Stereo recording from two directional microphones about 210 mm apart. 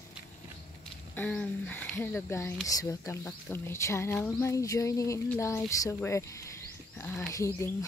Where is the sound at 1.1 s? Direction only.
5° left (ahead or behind).